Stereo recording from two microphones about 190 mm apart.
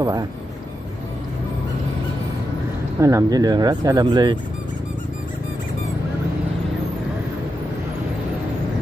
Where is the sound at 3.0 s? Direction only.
20° right (ahead or behind).